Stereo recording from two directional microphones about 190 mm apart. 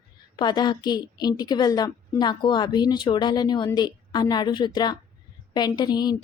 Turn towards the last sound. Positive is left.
turn(degrees=20)  # may be behind; listen again after turning